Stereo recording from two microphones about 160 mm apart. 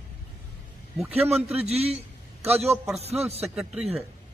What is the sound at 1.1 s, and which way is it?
A man's voice, 40° right (ahead or behind).